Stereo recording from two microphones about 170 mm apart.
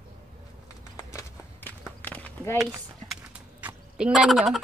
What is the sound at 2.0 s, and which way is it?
Walk, 10° left (ahead or behind).